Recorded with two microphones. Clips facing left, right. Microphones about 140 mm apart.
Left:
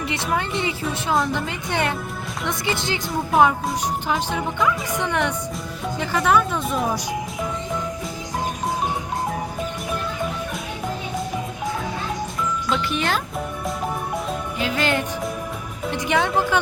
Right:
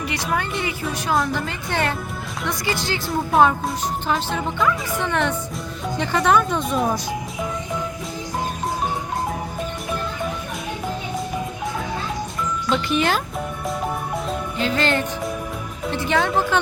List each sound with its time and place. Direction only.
0.3 s a woman's voice: 25° left (ahead or behind)
3.1 s a woman's voice: 10° left (ahead or behind)
12.6 s speech: centre (ahead or behind)
14.6 s a woman's voice: 10° left (ahead or behind)